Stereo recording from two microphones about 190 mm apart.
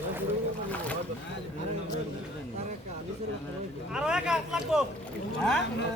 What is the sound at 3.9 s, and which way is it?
Speech, 5° right (ahead or behind).